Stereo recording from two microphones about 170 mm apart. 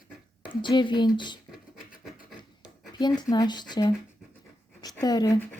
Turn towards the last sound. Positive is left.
turn(degrees=20)  # may be behind; listen again after turning